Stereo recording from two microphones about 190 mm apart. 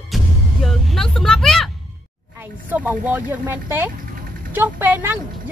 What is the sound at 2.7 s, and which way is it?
Speech, 10° right (ahead or behind).